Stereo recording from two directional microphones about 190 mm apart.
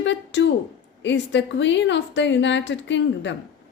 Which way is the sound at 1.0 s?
70° left (ahead or behind).